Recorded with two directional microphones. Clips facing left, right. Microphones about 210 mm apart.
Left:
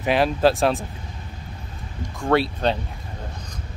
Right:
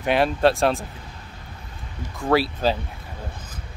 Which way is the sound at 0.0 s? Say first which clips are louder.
Even; centre (ahead or behind).